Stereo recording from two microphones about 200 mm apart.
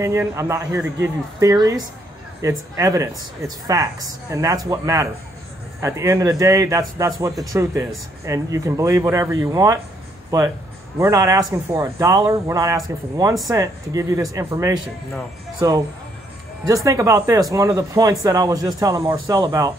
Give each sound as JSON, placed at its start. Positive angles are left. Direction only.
{"t": 0.0, "sound": "speech", "side_deg": -15}
{"t": 11.0, "sound": "speech", "side_deg": -15}